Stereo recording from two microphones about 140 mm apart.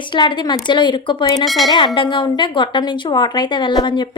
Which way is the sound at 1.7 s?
35° left (ahead or behind).